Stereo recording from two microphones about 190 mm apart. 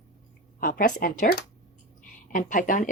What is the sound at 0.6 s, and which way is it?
Speech, 45° left (ahead or behind).